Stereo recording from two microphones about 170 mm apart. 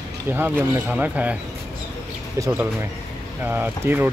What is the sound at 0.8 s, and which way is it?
Speech, 10° right (ahead or behind).